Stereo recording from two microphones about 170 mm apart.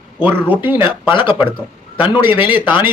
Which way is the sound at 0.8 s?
30° left (ahead or behind).